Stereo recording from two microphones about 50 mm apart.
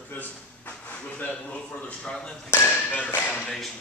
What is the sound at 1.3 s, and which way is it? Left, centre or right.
Speech, left.